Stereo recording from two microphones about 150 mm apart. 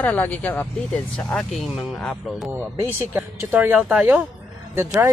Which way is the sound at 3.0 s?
15° right (ahead or behind).